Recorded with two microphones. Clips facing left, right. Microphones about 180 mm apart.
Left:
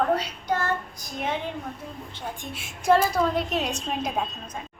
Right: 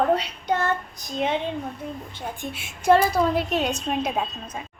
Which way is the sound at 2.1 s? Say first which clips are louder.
Right 3 dB; 5° right (ahead or behind).